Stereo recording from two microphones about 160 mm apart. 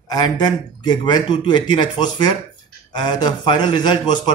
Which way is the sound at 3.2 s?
25° left (ahead or behind).